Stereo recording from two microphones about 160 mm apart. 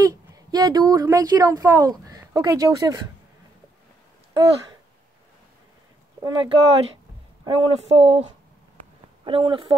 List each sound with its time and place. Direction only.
0.0 s speech: 25° right (ahead or behind)
4.3 s speech: 25° right (ahead or behind)
6.2 s speech: 30° right (ahead or behind)
7.4 s speech: 40° right (ahead or behind)